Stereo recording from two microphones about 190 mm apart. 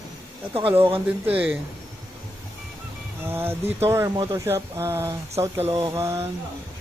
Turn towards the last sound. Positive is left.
turn(degrees=-15)  # may be behind; listen again after turning